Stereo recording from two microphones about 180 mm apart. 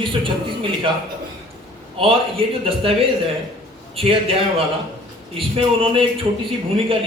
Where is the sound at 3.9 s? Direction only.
30° right (ahead or behind).